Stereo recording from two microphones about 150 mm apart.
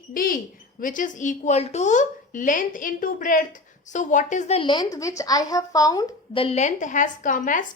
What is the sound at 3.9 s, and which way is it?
Speech, 55° left (ahead or behind).